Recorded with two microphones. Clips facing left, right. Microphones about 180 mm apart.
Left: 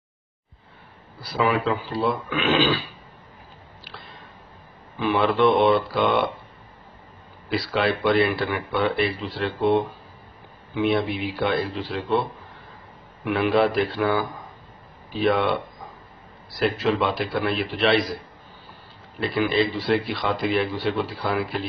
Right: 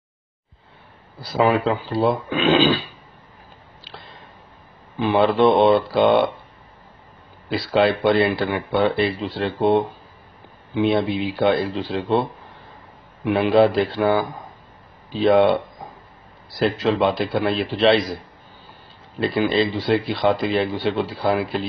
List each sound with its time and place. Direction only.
1.2 s speech: 25° right (ahead or behind)
4.9 s speech: 25° right (ahead or behind)
7.4 s speech: 25° right (ahead or behind)
10.7 s speech: 30° right (ahead or behind)
13.6 s speech: 30° right (ahead or behind)
16.5 s speech: 30° right (ahead or behind)
19.1 s speech: 25° right (ahead or behind)